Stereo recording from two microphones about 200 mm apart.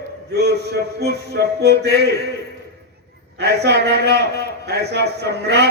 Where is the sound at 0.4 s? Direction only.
55° right (ahead or behind).